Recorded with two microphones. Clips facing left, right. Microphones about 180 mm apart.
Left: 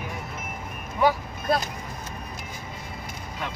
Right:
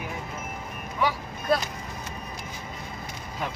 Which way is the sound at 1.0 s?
50° left (ahead or behind).